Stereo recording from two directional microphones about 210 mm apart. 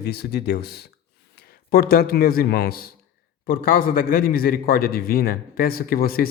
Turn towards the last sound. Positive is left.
turn(degrees=45)  # may be behind; listen again after turning